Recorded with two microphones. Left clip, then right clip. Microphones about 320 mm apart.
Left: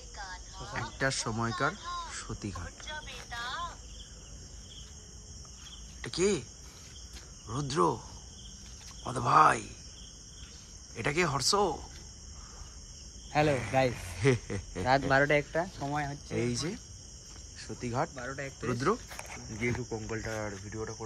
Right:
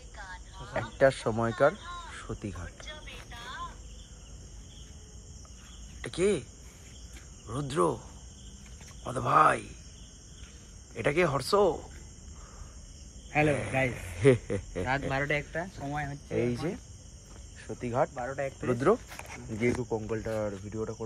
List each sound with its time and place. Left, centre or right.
0.2 s a sound: centre
2.0 s crow: centre
3.3 s cricket: left
6.0 s speech: centre
7.4 s speech: centre
9.0 s speech: centre
11.0 s speech: centre
13.3 s speech: centre
14.9 s speech: left; by 18.1 s centre
18.2 s speech: centre
18.7 s speech: centre